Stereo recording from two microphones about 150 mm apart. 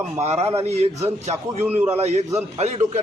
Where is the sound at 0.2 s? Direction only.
45° right (ahead or behind).